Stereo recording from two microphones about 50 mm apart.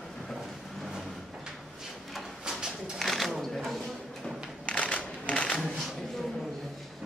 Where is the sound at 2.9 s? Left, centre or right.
Centre.